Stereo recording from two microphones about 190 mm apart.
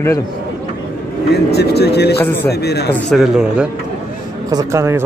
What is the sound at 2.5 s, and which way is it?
Speech, 60° left (ahead or behind).